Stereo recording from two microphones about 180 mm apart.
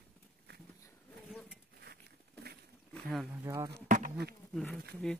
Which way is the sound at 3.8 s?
45° right (ahead or behind).